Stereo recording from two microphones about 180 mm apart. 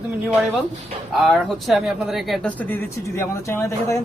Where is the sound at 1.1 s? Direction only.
Centre (ahead or behind).